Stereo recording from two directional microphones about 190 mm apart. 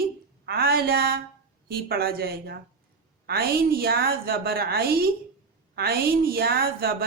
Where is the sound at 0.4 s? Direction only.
55° right (ahead or behind).